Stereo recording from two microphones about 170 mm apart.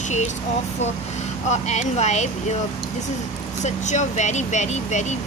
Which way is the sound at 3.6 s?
45° left (ahead or behind).